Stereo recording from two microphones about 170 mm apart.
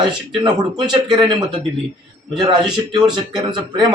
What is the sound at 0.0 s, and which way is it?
A man's voice, 25° right (ahead or behind).